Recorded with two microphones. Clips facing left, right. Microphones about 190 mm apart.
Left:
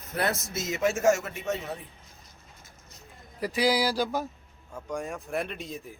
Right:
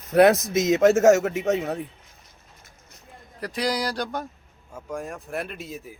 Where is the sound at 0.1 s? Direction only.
75° right (ahead or behind).